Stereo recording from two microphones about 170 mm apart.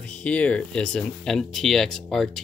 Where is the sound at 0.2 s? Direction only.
10° left (ahead or behind).